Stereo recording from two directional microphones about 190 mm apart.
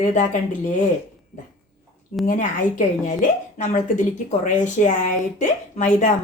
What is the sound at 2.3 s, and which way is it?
Speech, 40° left (ahead or behind).